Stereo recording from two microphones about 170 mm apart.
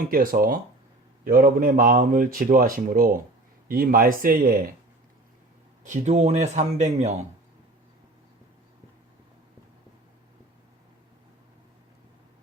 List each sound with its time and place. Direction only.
0.0 s speech: 55° right (ahead or behind)
5.8 s a man's voice: 45° right (ahead or behind)